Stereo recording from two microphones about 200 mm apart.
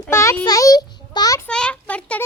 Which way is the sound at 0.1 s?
15° left (ahead or behind).